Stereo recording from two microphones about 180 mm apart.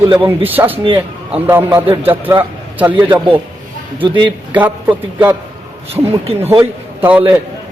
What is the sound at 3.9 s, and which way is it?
Speech, 25° right (ahead or behind).